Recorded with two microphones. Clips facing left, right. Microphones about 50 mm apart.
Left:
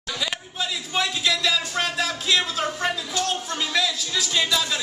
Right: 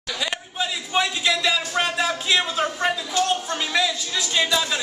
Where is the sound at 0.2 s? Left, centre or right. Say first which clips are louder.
Right 3 dB; centre.